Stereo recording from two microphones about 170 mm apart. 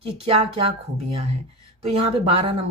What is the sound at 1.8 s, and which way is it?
Speech, 35° right (ahead or behind).